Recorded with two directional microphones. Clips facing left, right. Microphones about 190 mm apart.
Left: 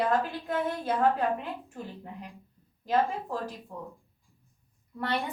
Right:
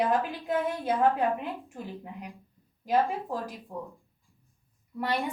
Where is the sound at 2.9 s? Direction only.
15° right (ahead or behind).